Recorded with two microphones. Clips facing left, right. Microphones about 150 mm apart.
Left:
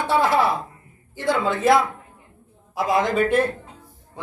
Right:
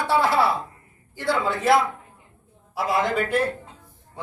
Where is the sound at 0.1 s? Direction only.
20° left (ahead or behind).